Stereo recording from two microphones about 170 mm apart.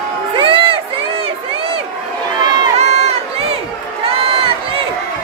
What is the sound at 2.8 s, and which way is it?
Run, 40° right (ahead or behind).